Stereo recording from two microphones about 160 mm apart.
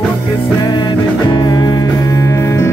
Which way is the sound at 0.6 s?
25° left (ahead or behind).